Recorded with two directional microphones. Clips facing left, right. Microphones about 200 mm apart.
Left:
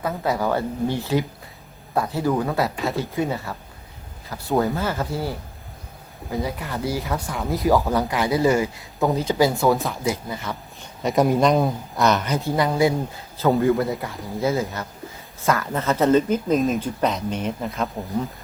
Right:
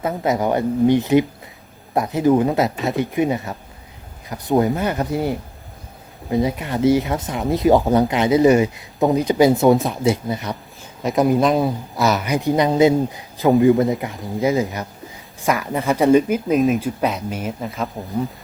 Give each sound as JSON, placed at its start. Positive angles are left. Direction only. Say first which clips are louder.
{"t": 0.0, "sound": "speech", "louder": "right 4 dB", "side_deg": -20}
{"t": 11.0, "sound": "speech", "louder": "right 2 dB", "side_deg": 0}
{"t": 16.6, "sound": "speech", "louder": "right 4 dB", "side_deg": 0}